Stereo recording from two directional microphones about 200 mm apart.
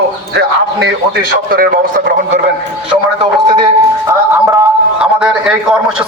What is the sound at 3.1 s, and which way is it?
Speech, 20° right (ahead or behind).